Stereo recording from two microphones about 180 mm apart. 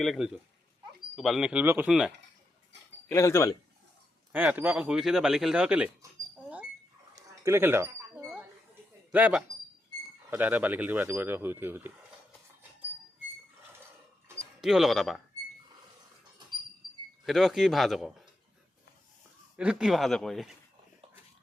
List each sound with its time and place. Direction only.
0.0 s speech: centre (ahead or behind)
3.1 s speech: 15° left (ahead or behind)
4.3 s speech: 10° right (ahead or behind)
7.2 s a sound: 15° right (ahead or behind)
9.1 s speech: 10° right (ahead or behind)
14.3 s speech: centre (ahead or behind)
17.2 s speech: centre (ahead or behind)
19.5 s speech: 5° right (ahead or behind)